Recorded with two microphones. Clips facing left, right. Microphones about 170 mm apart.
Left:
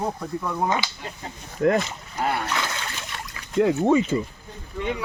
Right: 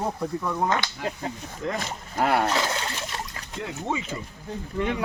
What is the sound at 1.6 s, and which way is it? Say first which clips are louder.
Speech: left 10 dB; 55° left (ahead or behind).